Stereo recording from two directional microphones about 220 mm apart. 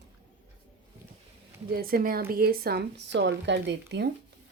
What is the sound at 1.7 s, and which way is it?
A woman's voice, 40° right (ahead or behind).